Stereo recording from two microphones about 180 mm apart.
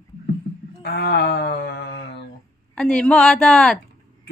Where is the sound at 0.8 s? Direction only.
65° left (ahead or behind).